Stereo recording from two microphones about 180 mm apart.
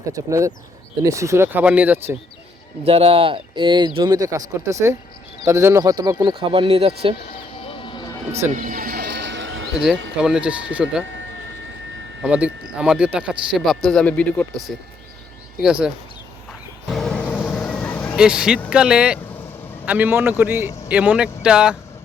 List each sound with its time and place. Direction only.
0.1 s speech: 15° right (ahead or behind)
2.8 s speech: 30° right (ahead or behind)
7.6 s vehicle: 30° left (ahead or behind)
8.4 s music: 45° right (ahead or behind); by 9.8 s 90° right
10.2 s speech: 5° right (ahead or behind)
12.2 s speech: 5° right (ahead or behind)
16.9 s vehicle: 5° left (ahead or behind)
18.2 s speech: 5° right (ahead or behind)